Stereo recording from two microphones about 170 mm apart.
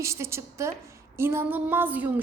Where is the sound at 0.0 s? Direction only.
15° right (ahead or behind).